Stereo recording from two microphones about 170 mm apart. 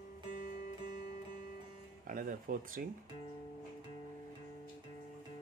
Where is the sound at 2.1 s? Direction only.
50° right (ahead or behind).